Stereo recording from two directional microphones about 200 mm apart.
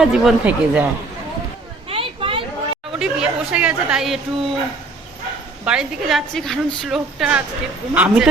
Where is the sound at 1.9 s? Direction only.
25° right (ahead or behind).